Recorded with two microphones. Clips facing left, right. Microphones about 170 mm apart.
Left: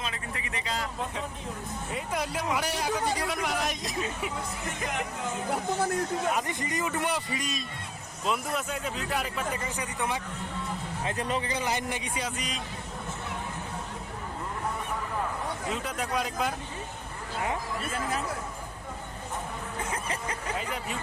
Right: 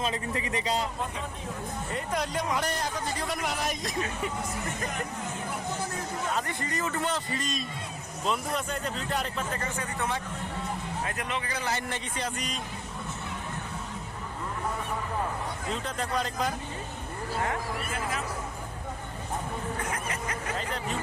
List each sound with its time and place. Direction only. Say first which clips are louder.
0.0 s speech: right 6 dB; 35° right (ahead or behind)
1.9 s speech: right 1 dB; 5° left (ahead or behind)
3.2 s speech: left 1 dB; centre (ahead or behind)
6.3 s speech: left 1 dB; 15° left (ahead or behind)
9.7 s speech: even; 15° left (ahead or behind)
11.0 s speech: left 6 dB; 30° left (ahead or behind)
11.4 s speech: left 2 dB; 20° left (ahead or behind)
15.7 s speech: right 1 dB; 10° left (ahead or behind)
19.9 s a sound: even; 30° left (ahead or behind)